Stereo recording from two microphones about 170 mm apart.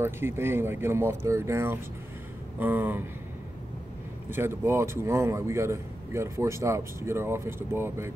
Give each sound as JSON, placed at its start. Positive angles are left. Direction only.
{"t": 0.0, "sound": "a man's voice", "side_deg": -15}
{"t": 4.3, "sound": "a man's voice", "side_deg": -15}